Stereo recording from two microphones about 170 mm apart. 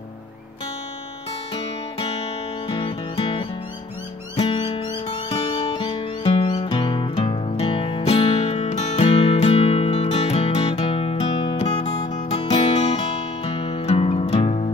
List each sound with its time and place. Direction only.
2.7 s music: 30° left (ahead or behind)